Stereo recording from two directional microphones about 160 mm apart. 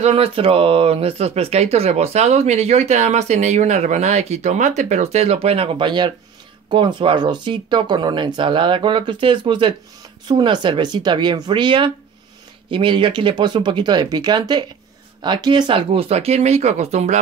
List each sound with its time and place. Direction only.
0.0 s speech: 40° right (ahead or behind)